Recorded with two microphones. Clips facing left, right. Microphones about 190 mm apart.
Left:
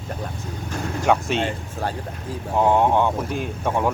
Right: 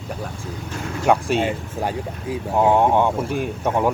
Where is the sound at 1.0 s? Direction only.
5° right (ahead or behind).